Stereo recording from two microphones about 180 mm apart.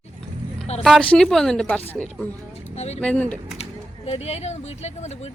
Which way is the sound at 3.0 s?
5° left (ahead or behind).